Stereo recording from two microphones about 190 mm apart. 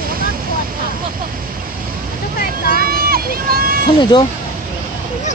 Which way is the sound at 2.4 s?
55° left (ahead or behind).